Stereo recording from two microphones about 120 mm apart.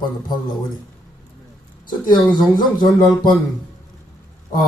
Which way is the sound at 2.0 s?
40° left (ahead or behind).